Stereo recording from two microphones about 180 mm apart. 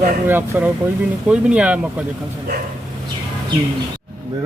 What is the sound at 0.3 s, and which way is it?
Speech, 10° right (ahead or behind).